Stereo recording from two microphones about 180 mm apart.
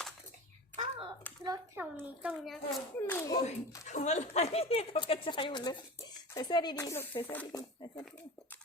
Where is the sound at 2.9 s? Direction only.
10° left (ahead or behind).